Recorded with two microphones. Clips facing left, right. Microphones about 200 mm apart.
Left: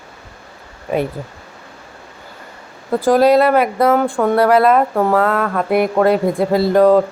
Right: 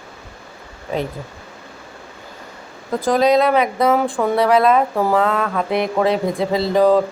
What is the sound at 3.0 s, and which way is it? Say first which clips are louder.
Speech: left 3 dB; 5° left (ahead or behind).